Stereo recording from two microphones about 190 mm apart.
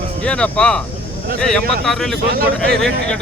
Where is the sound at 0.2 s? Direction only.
5° left (ahead or behind).